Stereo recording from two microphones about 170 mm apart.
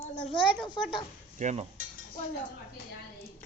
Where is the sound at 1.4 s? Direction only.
45° right (ahead or behind).